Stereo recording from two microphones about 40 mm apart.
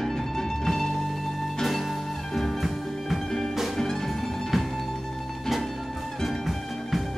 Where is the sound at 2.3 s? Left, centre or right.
Centre.